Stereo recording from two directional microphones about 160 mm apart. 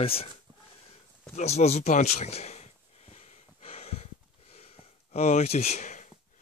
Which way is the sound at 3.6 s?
40° left (ahead or behind).